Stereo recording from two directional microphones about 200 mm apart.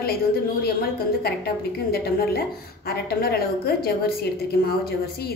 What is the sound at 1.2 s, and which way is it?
A woman's voice, 50° left (ahead or behind).